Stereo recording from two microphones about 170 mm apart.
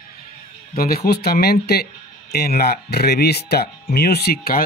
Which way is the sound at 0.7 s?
60° left (ahead or behind).